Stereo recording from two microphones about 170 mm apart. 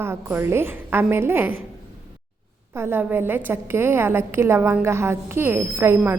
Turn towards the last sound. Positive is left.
turn(degrees=-15)  # may be behind; listen again after turning